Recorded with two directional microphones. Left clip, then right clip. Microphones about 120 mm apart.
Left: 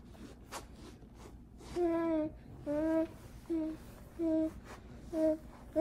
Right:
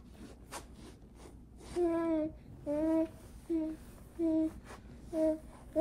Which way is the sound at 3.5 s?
35° left (ahead or behind).